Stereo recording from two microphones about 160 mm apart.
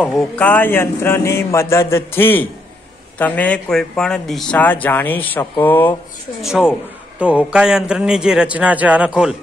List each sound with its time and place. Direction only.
0.0 s speech: centre (ahead or behind)
6.4 s a man's voice: 5° right (ahead or behind)